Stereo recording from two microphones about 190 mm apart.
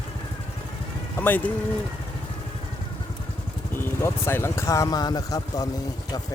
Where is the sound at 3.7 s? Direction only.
15° left (ahead or behind).